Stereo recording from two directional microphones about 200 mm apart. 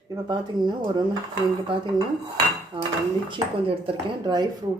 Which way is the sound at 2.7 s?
25° right (ahead or behind).